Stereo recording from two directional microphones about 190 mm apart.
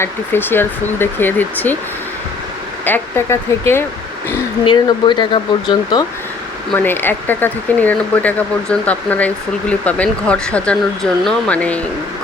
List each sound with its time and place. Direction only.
0.0 s speech: 10° left (ahead or behind)
2.8 s speech: 10° left (ahead or behind)
4.6 s speech: 25° left (ahead or behind)
6.7 s speech: 10° left (ahead or behind)